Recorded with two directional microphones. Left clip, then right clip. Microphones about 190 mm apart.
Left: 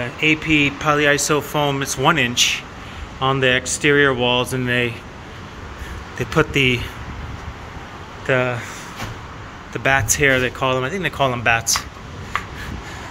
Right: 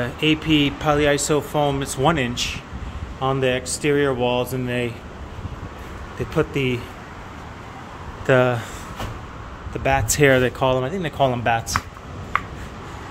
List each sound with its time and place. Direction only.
0.0 s speech: 25° right (ahead or behind); by 4.9 s centre (ahead or behind)
6.1 s speech: centre (ahead or behind)
8.3 s speech: 30° right (ahead or behind)
10.0 s speech: 30° right (ahead or behind)